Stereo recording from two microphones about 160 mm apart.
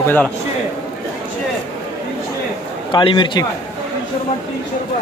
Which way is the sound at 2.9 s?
30° left (ahead or behind).